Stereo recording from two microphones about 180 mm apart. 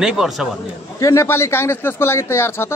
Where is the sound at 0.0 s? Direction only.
5° right (ahead or behind).